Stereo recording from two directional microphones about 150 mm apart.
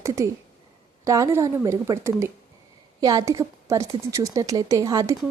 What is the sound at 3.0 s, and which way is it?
Speech, 25° right (ahead or behind).